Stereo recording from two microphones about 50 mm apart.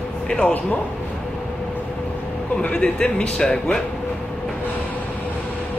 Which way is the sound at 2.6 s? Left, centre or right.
Centre.